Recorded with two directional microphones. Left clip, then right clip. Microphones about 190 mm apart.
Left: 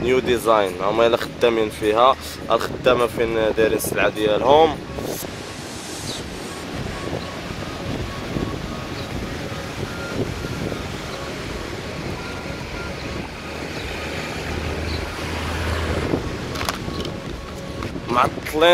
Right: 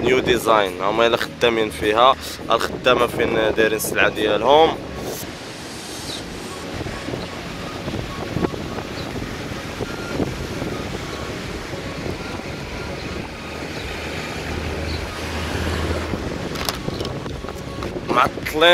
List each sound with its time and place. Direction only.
0.0 s speech: 5° left (ahead or behind)
18.1 s boat: 5° left (ahead or behind)